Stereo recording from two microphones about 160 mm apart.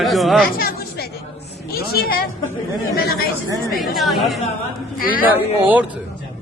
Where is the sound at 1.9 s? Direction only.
75° left (ahead or behind).